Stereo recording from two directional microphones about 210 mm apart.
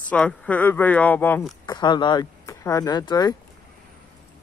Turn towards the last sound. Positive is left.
turn(degrees=20)  # may be behind; listen again after turning